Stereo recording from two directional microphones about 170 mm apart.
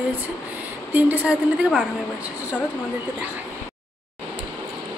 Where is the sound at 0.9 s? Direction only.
10° right (ahead or behind).